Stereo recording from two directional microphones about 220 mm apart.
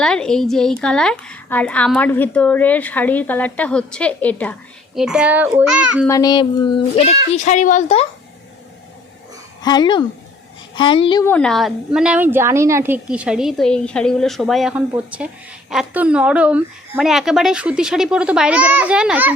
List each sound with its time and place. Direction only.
0.0 s a woman's voice: 5° left (ahead or behind)
4.9 s a woman's voice: 5° right (ahead or behind)
6.1 s a woman's voice: 15° left (ahead or behind)
9.6 s speech: 20° left (ahead or behind)
11.3 s a woman's voice: 5° left (ahead or behind)